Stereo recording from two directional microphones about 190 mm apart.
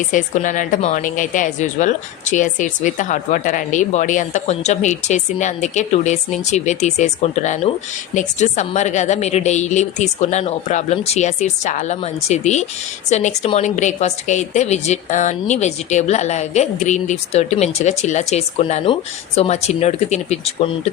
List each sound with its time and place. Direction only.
0.1 s a woman's voice: 40° left (ahead or behind)